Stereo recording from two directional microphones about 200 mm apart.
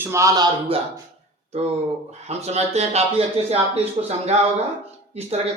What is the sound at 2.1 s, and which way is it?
Speech, 35° right (ahead or behind).